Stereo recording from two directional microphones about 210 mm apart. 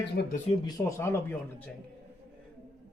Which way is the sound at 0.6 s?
15° left (ahead or behind).